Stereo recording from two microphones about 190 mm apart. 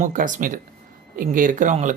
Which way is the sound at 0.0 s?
45° right (ahead or behind).